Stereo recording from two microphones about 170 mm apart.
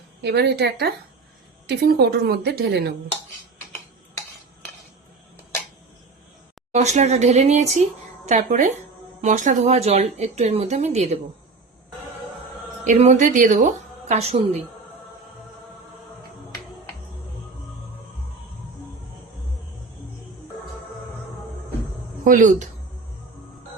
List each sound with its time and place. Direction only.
0.2 s a woman's voice: 80° right
6.7 s speech: 45° right (ahead or behind)
12.8 s speech: 45° right (ahead or behind)
22.2 s speech: 50° right (ahead or behind)